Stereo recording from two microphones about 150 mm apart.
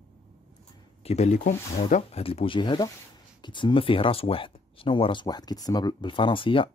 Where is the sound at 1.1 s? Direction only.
50° left (ahead or behind).